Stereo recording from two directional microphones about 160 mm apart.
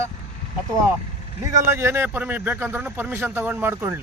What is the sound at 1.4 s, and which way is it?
Speech, 15° right (ahead or behind).